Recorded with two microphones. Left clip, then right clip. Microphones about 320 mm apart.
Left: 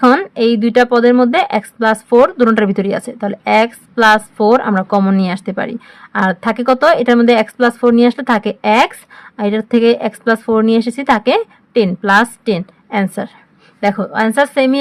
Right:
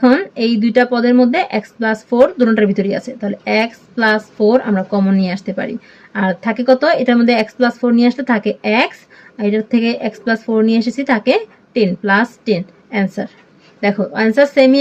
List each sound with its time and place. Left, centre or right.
0.1 s speech: left
2.9 s speech: left
3.4 s speech: left
13.8 s a woman's voice: left
14.3 s speech: left